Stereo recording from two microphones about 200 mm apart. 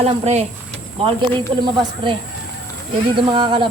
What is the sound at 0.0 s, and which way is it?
Speech, 30° right (ahead or behind).